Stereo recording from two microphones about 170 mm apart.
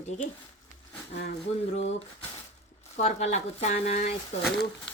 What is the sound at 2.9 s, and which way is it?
Speech, 40° left (ahead or behind).